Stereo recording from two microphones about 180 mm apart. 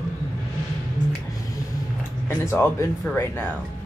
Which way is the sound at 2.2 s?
15° left (ahead or behind).